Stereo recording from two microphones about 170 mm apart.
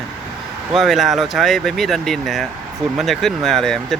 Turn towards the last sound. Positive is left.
turn(degrees=0)  # may be behind; listen again after turning